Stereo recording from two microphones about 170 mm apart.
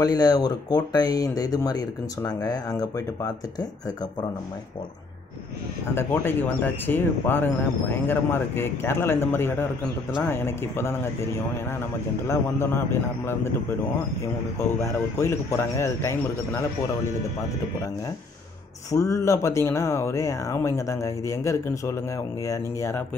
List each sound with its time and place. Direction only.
0.0 s speech: 20° left (ahead or behind)
5.9 s speech: 10° left (ahead or behind)
14.8 s speech: 15° left (ahead or behind)
18.9 s speech: 20° left (ahead or behind)